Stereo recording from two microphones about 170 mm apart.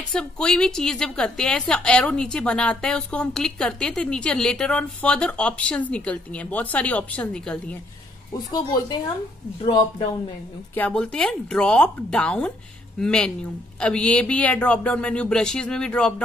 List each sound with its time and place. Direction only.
0.1 s a woman's voice: 5° left (ahead or behind)
8.3 s speech: 25° left (ahead or behind)
10.7 s a woman's voice: 10° left (ahead or behind)